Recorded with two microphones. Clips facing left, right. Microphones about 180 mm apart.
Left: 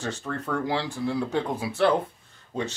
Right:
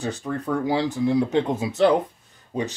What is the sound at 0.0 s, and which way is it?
Speech, 15° right (ahead or behind).